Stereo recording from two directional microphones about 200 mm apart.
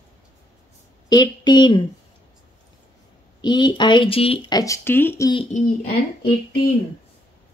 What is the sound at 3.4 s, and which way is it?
Speech, 20° left (ahead or behind).